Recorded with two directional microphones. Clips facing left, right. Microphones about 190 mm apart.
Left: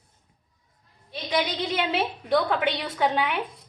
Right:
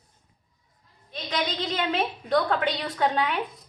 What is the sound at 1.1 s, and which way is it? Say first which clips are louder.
A woman's voice: left 3 dB; 10° left (ahead or behind).